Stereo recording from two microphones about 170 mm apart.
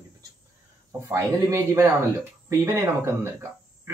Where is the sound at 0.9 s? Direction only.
20° right (ahead or behind).